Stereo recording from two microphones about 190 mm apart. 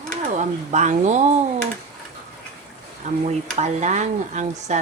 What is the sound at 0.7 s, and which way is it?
Speech, 40° right (ahead or behind).